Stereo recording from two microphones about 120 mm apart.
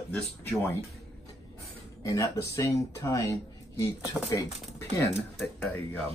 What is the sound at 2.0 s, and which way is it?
Speech, 30° left (ahead or behind).